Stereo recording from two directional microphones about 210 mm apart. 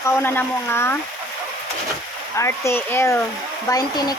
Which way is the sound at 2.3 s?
15° left (ahead or behind).